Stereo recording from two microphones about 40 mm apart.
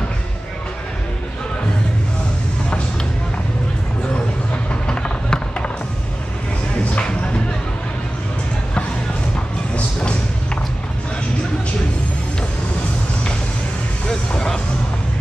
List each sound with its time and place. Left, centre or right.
4.8 s run: left
6.8 s music: left
9.9 s a sound: left
14.0 s music: left